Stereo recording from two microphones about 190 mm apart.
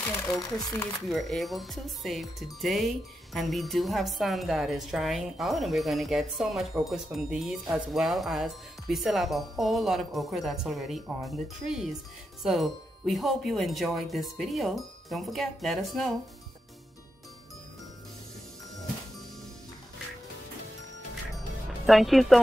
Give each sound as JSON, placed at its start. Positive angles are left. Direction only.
{"t": 0.4, "sound": "speech", "side_deg": 20}
{"t": 1.0, "sound": "a woman's voice", "side_deg": 0}
{"t": 21.6, "sound": "speech", "side_deg": 0}